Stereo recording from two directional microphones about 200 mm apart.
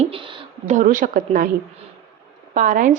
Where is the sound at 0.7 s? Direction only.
45° right (ahead or behind).